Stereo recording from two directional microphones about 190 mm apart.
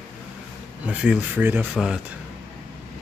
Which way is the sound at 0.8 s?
5° right (ahead or behind).